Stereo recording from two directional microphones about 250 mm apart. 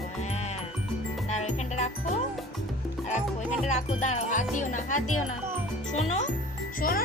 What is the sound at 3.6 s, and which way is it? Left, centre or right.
Speech, left.